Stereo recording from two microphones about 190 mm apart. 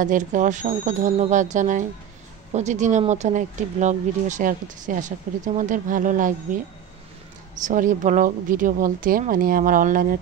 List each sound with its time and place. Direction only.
0.0 s speech: 40° right (ahead or behind)